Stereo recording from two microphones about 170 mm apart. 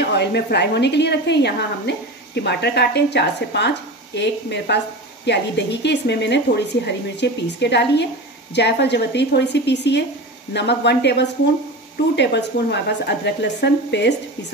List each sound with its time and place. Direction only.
0.0 s a woman's voice: 80° left